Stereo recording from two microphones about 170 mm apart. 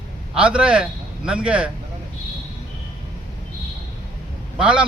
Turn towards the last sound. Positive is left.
turn(degrees=-5)  # may be behind; listen again after turning